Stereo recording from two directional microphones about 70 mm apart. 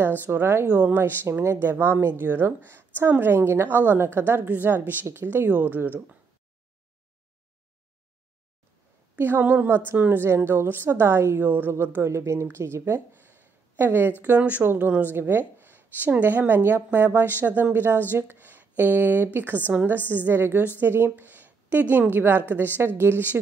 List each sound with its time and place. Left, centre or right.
0.2 s a woman's voice: right
0.7 s speech: centre
0.9 s a woman's voice: right
9.1 s a woman's voice: right
14.6 s a woman's voice: right